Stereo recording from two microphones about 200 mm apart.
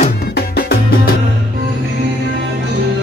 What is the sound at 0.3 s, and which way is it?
Music, 50° left (ahead or behind).